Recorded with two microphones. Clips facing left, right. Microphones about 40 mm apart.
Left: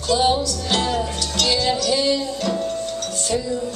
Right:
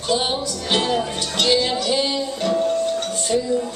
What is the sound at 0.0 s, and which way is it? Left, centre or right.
Music, right.